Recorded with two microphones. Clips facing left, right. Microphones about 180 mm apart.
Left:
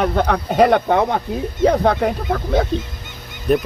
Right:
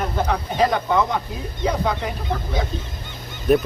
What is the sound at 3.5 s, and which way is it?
Speech, 5° right (ahead or behind).